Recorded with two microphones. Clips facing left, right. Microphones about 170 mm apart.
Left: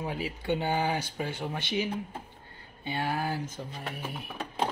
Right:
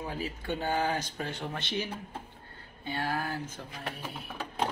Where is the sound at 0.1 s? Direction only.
15° left (ahead or behind).